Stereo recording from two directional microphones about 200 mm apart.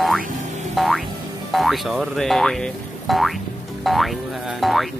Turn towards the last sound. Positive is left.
turn(degrees=0)  # may be behind; listen again after turning